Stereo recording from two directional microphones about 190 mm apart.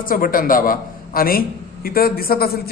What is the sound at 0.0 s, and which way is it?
A man's voice, 50° left (ahead or behind).